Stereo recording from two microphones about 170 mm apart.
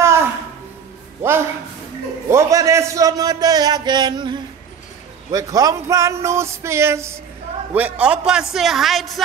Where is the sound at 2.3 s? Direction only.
20° right (ahead or behind).